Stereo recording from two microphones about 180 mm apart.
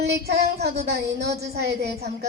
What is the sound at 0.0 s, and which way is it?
A woman's voice, 65° right (ahead or behind).